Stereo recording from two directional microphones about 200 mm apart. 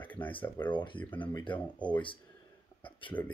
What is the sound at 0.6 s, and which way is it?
Speech, 25° left (ahead or behind).